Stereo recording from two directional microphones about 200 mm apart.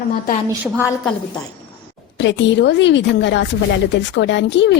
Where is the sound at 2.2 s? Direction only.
65° left (ahead or behind).